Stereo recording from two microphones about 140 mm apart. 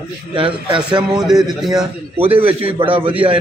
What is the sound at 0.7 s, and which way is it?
A man's voice, 10° right (ahead or behind).